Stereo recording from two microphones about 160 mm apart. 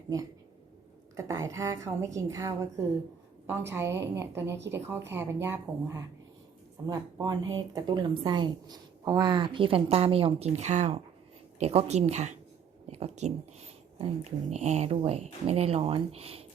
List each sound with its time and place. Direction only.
0.1 s a woman's voice: 20° right (ahead or behind); by 16.5 s 40° right (ahead or behind)